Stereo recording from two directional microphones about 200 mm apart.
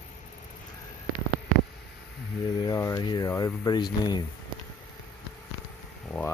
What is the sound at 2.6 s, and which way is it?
Speech, 15° left (ahead or behind).